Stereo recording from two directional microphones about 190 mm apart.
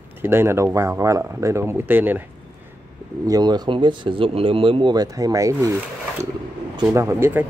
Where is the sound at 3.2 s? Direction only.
20° right (ahead or behind).